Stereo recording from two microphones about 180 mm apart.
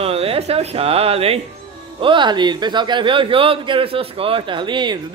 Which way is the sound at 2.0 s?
25° right (ahead or behind).